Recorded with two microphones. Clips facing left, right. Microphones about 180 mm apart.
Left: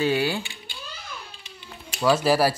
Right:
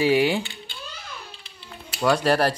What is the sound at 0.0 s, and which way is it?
Speech, 15° right (ahead or behind).